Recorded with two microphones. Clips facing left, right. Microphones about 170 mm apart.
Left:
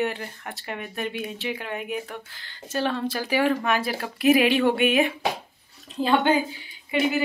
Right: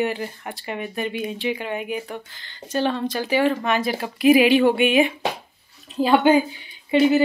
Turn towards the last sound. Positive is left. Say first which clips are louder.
# right 7 dB
turn(degrees=-30)  # may be behind; listen again after turning